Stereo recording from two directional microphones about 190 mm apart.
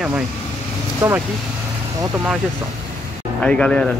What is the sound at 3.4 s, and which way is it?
Speech, 5° left (ahead or behind).